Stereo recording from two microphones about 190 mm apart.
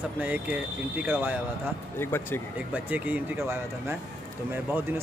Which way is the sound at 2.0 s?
10° left (ahead or behind).